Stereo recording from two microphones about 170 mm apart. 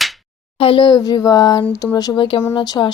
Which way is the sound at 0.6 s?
30° left (ahead or behind).